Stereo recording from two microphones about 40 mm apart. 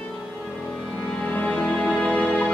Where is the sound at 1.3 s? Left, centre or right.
Left.